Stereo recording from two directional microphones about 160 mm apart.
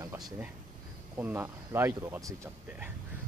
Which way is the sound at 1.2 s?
15° right (ahead or behind).